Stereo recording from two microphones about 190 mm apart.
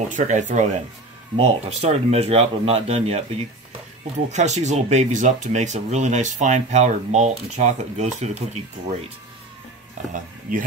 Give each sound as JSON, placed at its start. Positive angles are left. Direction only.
{"t": 0.1, "sound": "speech", "side_deg": -40}
{"t": 10.5, "sound": "speech", "side_deg": -45}